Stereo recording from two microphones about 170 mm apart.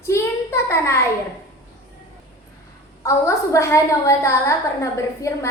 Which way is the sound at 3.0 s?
15° left (ahead or behind).